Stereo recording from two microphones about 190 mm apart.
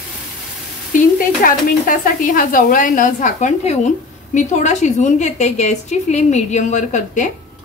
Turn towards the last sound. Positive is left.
turn(degrees=40)  # may be behind; listen again after turning